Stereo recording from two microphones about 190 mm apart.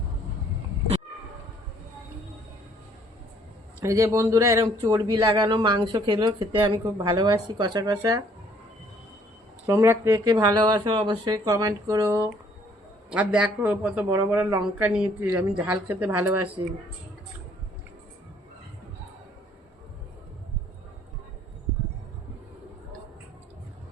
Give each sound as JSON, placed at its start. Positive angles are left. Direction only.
{"t": 3.8, "sound": "a man's voice", "side_deg": -15}
{"t": 9.6, "sound": "a man's voice", "side_deg": -15}